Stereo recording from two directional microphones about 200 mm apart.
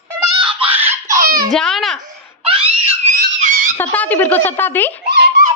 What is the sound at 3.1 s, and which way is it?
Screaming, 40° right (ahead or behind).